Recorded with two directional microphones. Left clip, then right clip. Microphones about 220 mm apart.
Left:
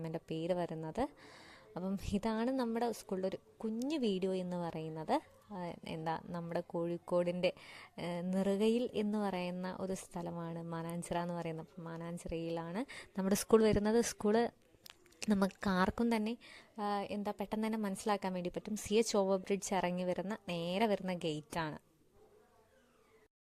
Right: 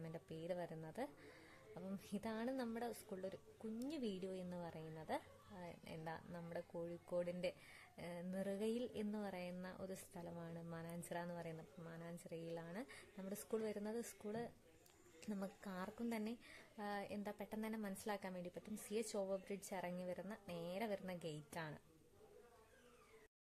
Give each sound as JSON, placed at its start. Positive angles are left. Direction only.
{"t": 0.0, "sound": "speech", "side_deg": 35}